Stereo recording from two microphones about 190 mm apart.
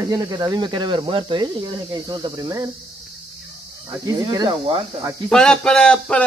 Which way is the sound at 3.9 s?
20° right (ahead or behind).